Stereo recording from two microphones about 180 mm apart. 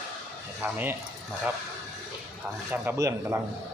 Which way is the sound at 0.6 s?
10° right (ahead or behind).